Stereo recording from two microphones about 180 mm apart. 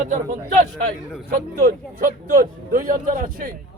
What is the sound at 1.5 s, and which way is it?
Speech, 50° right (ahead or behind).